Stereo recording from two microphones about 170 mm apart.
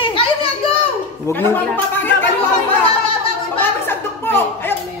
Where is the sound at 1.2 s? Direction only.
15° left (ahead or behind).